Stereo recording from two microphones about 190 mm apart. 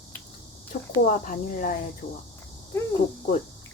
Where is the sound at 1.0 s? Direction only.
45° left (ahead or behind).